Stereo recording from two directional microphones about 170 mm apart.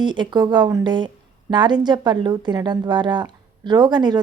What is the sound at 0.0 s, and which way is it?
A woman's voice, 25° right (ahead or behind).